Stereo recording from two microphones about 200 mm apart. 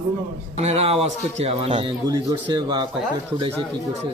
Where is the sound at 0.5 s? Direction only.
30° right (ahead or behind).